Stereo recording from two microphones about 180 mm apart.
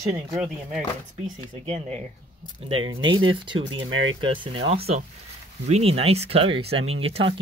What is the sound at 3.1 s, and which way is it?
Speech, 25° right (ahead or behind).